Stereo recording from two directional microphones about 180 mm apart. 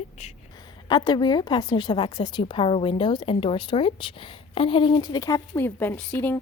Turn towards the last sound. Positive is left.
turn(degrees=10)  # may be behind; listen again after turning